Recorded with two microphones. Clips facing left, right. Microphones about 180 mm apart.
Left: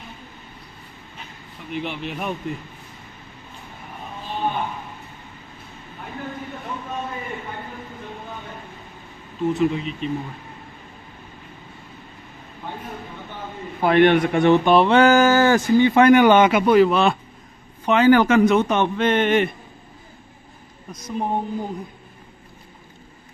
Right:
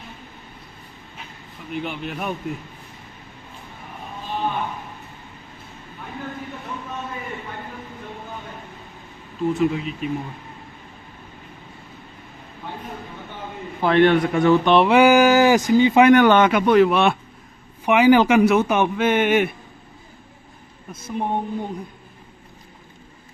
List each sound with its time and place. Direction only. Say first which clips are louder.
1.7 s speech: even; centre (ahead or behind)
9.4 s speech: even; centre (ahead or behind)
13.7 s a man's voice: left 1 dB; 15° left (ahead or behind)
14.6 s speech: even; 5° left (ahead or behind)
14.9 s a man's voice: right 1 dB; 10° right (ahead or behind)
16.1 s a man's voice: left 1 dB; 10° left (ahead or behind); by 19.5 s 5° right (ahead or behind)